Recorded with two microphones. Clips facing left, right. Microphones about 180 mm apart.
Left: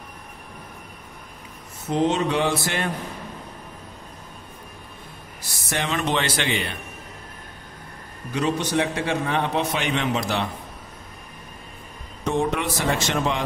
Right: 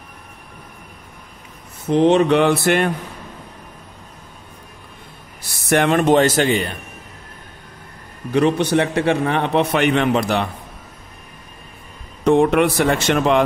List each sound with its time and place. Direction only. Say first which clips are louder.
1.9 s a man's voice: right 8 dB; 65° right (ahead or behind)
5.7 s speech: right 11 dB; 60° right (ahead or behind)
8.3 s a man's voice: right 8 dB; 65° right (ahead or behind)
12.3 s a man's voice: right 10 dB; 65° right (ahead or behind)